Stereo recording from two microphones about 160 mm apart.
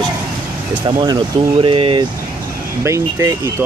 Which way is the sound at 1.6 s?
35° right (ahead or behind).